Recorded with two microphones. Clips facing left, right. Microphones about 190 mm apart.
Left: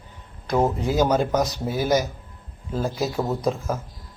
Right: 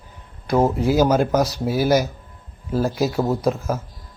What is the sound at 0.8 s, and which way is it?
Speech, 5° right (ahead or behind).